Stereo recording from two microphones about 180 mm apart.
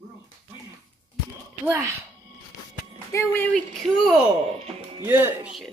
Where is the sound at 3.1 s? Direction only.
15° left (ahead or behind).